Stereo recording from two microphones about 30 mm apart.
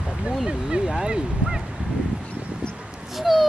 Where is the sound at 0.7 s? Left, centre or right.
Right.